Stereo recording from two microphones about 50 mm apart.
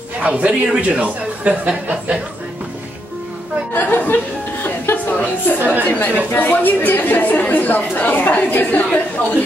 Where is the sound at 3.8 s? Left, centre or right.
Left.